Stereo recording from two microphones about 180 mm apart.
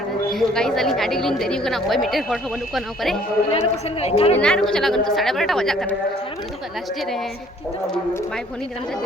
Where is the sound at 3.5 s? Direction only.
35° left (ahead or behind).